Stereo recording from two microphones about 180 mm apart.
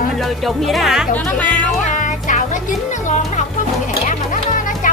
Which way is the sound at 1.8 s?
45° left (ahead or behind).